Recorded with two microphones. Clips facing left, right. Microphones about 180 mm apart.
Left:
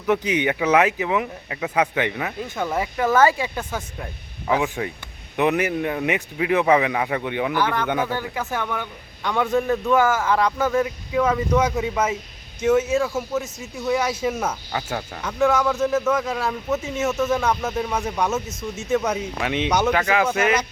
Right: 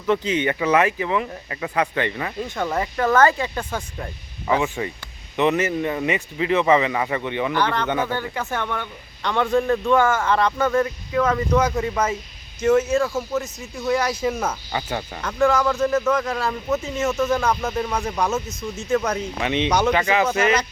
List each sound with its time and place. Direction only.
0.0 s speech: 15° left (ahead or behind); by 4.7 s centre (ahead or behind)
5.4 s speech: 15° left (ahead or behind)